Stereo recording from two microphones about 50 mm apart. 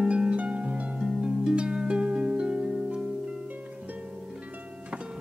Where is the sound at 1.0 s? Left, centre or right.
Centre.